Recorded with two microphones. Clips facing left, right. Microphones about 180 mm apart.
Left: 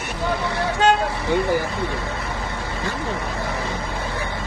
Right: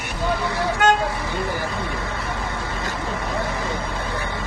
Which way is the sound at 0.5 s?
25° left (ahead or behind).